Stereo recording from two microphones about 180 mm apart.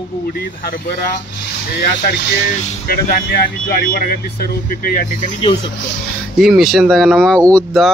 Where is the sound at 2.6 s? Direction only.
55° left (ahead or behind).